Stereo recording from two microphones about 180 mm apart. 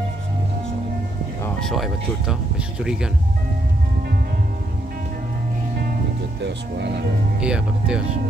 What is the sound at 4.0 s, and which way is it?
Music, 55° right (ahead or behind).